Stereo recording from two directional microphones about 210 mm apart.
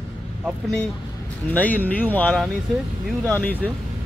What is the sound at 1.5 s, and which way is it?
Speech, 5° left (ahead or behind).